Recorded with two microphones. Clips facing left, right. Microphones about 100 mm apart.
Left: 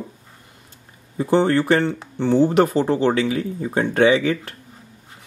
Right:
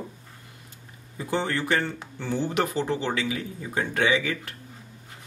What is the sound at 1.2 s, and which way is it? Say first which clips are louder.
Speech: left 10 dB; 30° left (ahead or behind).